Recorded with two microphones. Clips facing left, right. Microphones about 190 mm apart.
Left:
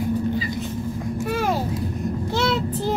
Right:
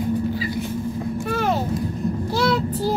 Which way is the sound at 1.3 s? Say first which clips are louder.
Right 1 dB; 10° left (ahead or behind).